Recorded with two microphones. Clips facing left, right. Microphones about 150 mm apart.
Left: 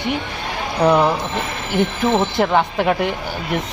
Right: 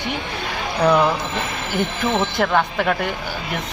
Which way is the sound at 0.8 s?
15° left (ahead or behind).